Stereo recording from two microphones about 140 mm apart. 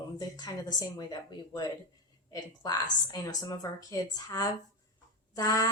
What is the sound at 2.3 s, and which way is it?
Speech, 25° left (ahead or behind).